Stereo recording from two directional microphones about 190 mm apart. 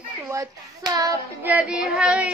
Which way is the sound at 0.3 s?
15° right (ahead or behind).